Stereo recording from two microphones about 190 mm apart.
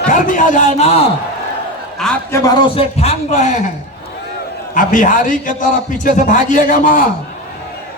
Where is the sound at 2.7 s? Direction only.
35° left (ahead or behind).